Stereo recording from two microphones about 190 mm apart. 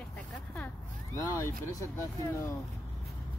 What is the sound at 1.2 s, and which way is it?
Speech, 15° left (ahead or behind).